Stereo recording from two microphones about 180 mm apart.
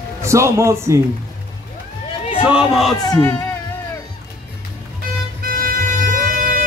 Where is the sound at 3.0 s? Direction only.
15° left (ahead or behind).